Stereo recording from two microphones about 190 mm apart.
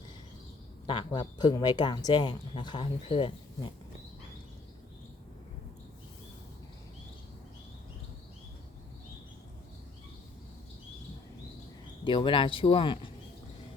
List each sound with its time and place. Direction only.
0.9 s speech: 25° left (ahead or behind)
12.0 s speech: 25° left (ahead or behind)